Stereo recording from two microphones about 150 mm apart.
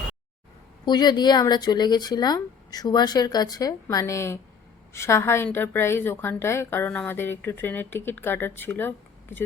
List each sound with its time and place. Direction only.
0.9 s a woman's voice: 30° left (ahead or behind); by 9.4 s 15° left (ahead or behind)